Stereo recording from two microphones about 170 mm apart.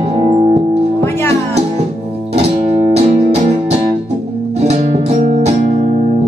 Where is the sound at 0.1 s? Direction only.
30° right (ahead or behind).